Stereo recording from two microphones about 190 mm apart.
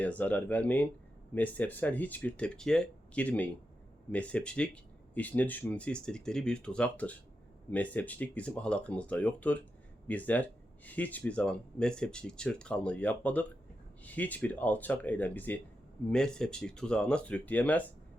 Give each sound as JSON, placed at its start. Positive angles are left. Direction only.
{"t": 0.0, "sound": "speech", "side_deg": 5}